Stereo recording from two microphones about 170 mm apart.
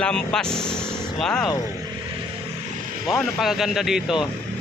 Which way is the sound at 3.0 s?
Centre (ahead or behind).